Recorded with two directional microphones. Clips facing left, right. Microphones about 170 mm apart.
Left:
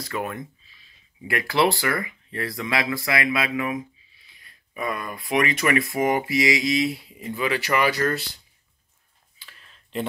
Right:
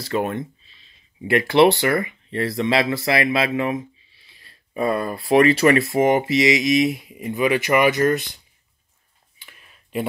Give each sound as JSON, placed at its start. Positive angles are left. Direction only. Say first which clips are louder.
{"t": 0.0, "sound": "speech", "louder": "right 6 dB", "side_deg": -30}
{"t": 9.4, "sound": "tick", "louder": "right 1 dB", "side_deg": -15}